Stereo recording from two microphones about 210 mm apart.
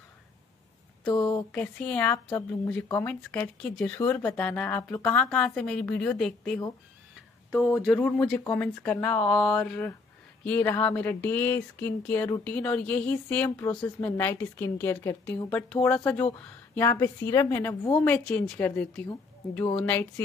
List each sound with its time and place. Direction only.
1.0 s speech: 20° left (ahead or behind)
1.5 s speech: 5° left (ahead or behind)